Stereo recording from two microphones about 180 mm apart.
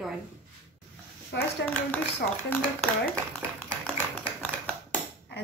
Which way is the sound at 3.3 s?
10° left (ahead or behind).